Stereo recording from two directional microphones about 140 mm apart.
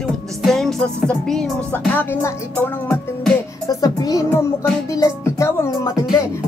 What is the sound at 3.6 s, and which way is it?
Music, 25° left (ahead or behind).